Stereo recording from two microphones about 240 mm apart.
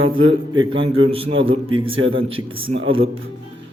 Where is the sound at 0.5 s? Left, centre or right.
Centre.